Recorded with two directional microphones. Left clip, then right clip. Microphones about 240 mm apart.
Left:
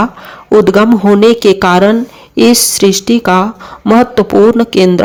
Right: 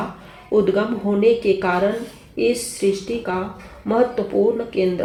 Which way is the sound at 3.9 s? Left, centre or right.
Left.